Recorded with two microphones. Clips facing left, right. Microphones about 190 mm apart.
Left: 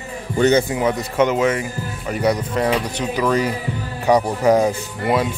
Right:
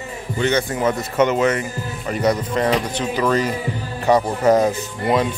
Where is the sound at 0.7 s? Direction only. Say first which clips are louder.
Even; 15° left (ahead or behind).